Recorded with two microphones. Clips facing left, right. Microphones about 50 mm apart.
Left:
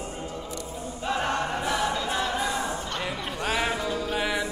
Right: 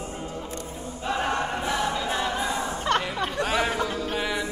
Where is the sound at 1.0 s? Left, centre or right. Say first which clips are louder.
Right 1 dB; centre.